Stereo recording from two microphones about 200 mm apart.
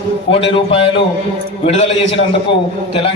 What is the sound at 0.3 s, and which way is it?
A man's voice, 25° left (ahead or behind).